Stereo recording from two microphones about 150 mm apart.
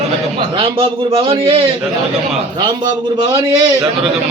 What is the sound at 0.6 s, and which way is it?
A man's voice, 40° right (ahead or behind).